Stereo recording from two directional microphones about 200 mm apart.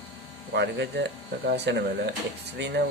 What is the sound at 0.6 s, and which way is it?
Speech, 60° right (ahead or behind).